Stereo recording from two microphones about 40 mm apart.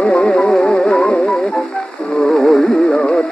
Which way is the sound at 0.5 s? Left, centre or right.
Centre.